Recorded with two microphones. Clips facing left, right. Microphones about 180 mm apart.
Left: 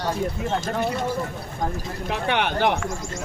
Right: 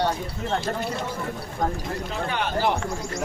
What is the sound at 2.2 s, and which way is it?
Speech, 70° left (ahead or behind).